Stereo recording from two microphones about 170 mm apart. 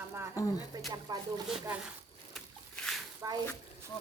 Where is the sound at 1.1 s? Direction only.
25° right (ahead or behind).